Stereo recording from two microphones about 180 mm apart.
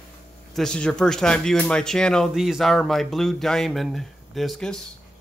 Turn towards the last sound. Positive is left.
turn(degrees=0)  # may be behind; listen again after turning